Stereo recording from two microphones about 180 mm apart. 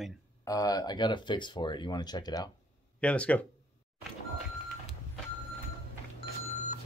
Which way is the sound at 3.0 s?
5° left (ahead or behind).